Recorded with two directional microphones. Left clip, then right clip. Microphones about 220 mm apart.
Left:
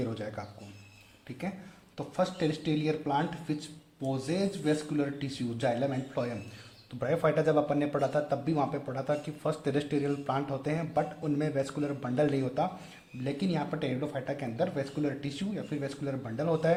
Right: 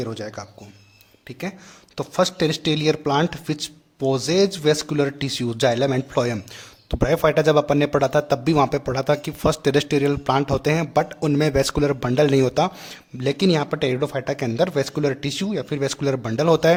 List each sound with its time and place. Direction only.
0.0 s speech: 25° right (ahead or behind)
2.0 s speech: 40° right (ahead or behind)